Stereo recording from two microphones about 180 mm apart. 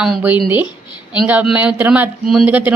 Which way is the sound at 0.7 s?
25° left (ahead or behind).